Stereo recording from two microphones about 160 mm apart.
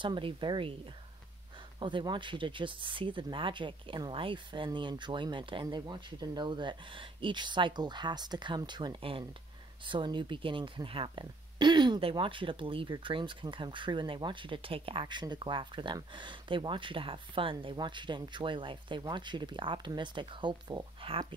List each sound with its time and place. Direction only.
0.0 s speech: 30° right (ahead or behind)
1.8 s speech: 30° right (ahead or behind)